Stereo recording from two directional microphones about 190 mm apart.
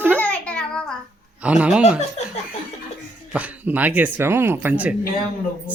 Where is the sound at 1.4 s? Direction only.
5° right (ahead or behind).